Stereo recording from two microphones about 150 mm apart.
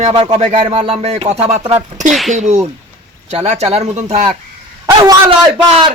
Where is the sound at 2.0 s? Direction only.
Centre (ahead or behind).